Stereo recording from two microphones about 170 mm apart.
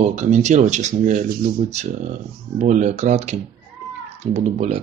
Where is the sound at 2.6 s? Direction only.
45° right (ahead or behind).